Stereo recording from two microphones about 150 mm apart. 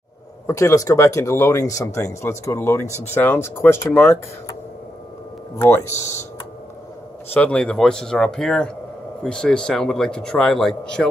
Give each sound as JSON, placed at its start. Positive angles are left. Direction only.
{"t": 0.5, "sound": "speech", "side_deg": 20}
{"t": 5.6, "sound": "speech", "side_deg": 20}
{"t": 7.3, "sound": "speech", "side_deg": 5}